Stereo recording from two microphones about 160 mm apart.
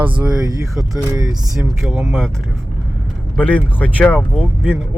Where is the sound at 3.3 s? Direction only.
10° left (ahead or behind).